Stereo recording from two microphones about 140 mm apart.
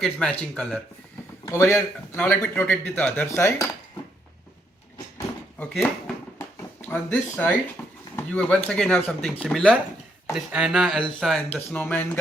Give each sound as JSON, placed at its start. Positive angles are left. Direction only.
{"t": 0.0, "sound": "speech", "side_deg": 5}
{"t": 1.5, "sound": "a man's voice", "side_deg": 20}
{"t": 5.5, "sound": "speech", "side_deg": 5}
{"t": 6.4, "sound": "a sound", "side_deg": 15}
{"t": 7.8, "sound": "drawer open or close", "side_deg": 15}
{"t": 8.1, "sound": "a man's voice", "side_deg": 10}